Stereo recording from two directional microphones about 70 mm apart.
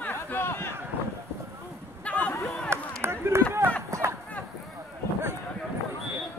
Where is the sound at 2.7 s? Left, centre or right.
Right.